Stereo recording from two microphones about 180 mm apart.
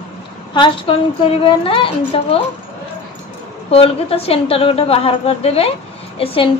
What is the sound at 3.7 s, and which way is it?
A woman's voice, 30° left (ahead or behind).